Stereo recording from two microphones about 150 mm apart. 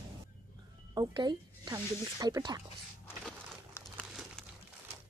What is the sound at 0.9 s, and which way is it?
Speech, 25° right (ahead or behind).